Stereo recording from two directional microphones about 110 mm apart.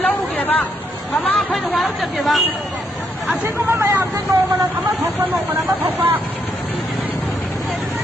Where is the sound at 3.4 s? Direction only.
25° right (ahead or behind).